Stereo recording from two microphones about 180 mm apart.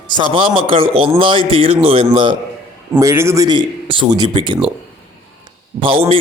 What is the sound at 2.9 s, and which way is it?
A man's voice, 15° right (ahead or behind).